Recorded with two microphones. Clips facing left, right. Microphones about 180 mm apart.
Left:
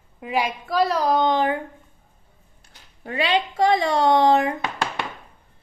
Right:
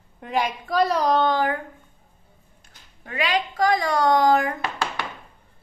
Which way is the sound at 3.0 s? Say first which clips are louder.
Left 2 dB; 30° left (ahead or behind).